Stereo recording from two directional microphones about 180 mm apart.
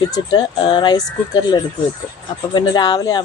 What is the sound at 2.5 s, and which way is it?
Speech, 20° left (ahead or behind).